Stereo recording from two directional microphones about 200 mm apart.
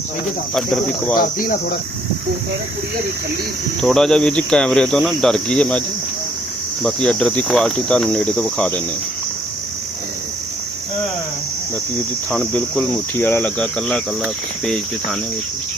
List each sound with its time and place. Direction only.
0.5 s speech: centre (ahead or behind)
1.2 s speech: 45° left (ahead or behind)
3.8 s speech: centre (ahead or behind)
6.8 s speech: 5° left (ahead or behind)
12.3 s speech: 5° left (ahead or behind)